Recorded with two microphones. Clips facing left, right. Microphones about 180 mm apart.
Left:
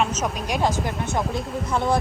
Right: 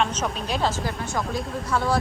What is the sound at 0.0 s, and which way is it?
Speech, 10° left (ahead or behind).